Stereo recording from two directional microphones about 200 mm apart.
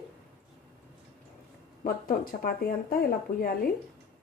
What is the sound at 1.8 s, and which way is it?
Speech, 45° left (ahead or behind).